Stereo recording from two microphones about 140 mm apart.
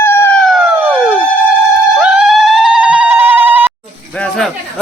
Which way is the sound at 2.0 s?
5° right (ahead or behind).